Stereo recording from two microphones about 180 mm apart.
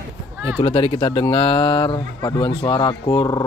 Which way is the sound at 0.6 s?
30° left (ahead or behind).